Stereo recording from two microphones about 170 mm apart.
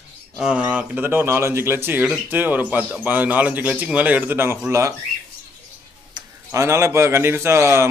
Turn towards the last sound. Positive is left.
turn(degrees=-15)  # may be behind; listen again after turning